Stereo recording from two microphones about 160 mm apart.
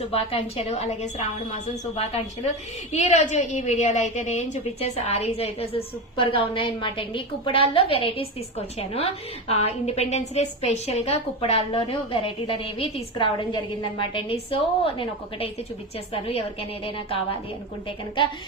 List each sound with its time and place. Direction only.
0.0 s a woman's voice: 40° left (ahead or behind)